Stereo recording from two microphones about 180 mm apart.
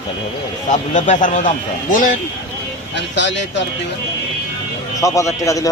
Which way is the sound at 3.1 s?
80° left.